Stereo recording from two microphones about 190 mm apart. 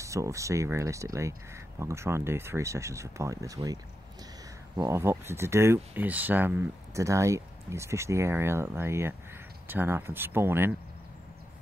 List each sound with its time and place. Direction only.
0.0 s speech: 15° right (ahead or behind)